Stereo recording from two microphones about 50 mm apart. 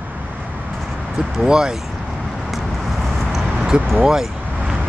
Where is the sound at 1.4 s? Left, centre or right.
Centre.